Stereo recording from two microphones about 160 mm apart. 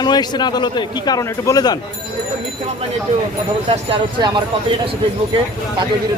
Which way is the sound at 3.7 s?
30° right (ahead or behind).